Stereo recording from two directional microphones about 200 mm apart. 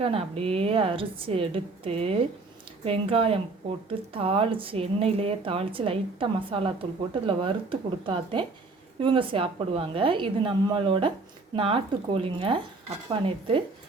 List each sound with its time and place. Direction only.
0.0 s speech: 30° right (ahead or behind)